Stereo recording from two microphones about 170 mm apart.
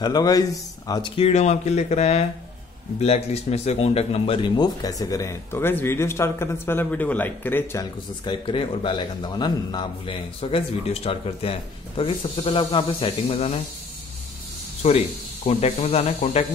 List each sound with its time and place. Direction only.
0.0 s a man's voice: 20° left (ahead or behind)
8.3 s a man's voice: 30° left (ahead or behind)
14.8 s a man's voice: 35° left (ahead or behind)